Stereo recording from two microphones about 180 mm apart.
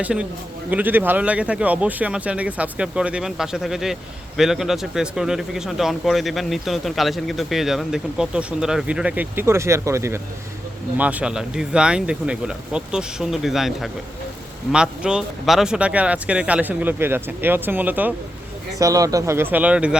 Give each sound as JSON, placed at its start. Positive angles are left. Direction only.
{"t": 0.0, "sound": "speech", "side_deg": -5}